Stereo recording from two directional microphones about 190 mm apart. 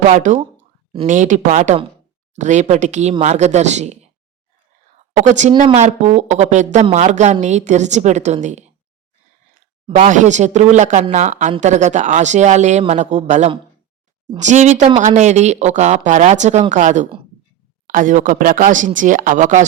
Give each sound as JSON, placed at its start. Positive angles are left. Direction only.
{"t": 0.1, "sound": "speech", "side_deg": -40}
{"t": 5.1, "sound": "speech", "side_deg": -40}